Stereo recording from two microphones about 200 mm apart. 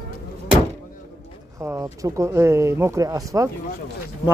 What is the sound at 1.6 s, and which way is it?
Speech, 15° right (ahead or behind).